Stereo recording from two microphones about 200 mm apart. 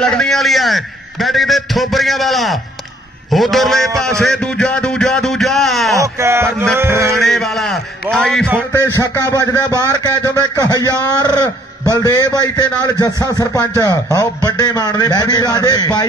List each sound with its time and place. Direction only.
0.0 s a man's voice: 5° left (ahead or behind)
5.9 s speech: 15° right (ahead or behind)
7.2 s a man's voice: centre (ahead or behind); by 16.1 s 20° left (ahead or behind)